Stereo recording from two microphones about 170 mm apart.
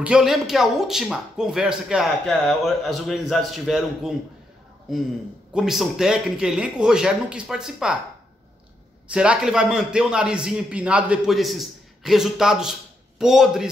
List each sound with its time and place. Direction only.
0.0 s speech: 5° right (ahead or behind)
5.5 s speech: 5° right (ahead or behind)
9.1 s speech: 5° right (ahead or behind)